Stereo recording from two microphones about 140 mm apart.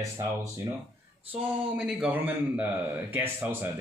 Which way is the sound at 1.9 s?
10° right (ahead or behind).